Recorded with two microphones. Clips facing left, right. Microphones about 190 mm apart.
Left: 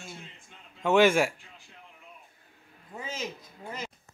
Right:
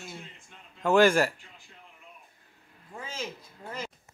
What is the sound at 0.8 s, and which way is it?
Speech, centre (ahead or behind).